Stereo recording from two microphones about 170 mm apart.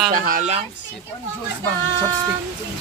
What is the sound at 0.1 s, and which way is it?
Speech, 55° right (ahead or behind).